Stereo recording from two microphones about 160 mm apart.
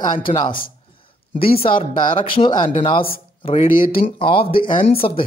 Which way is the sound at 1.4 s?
35° left (ahead or behind).